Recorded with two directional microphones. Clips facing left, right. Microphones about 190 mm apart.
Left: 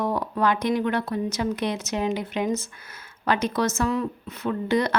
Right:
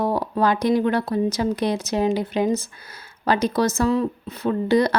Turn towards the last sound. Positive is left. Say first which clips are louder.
# right 5 dB
turn(degrees=-35)  # may be behind; listen again after turning